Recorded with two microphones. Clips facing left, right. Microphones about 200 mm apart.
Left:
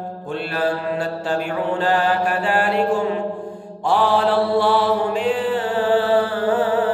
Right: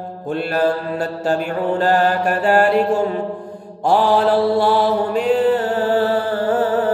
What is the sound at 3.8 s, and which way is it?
Mantra, 40° right (ahead or behind).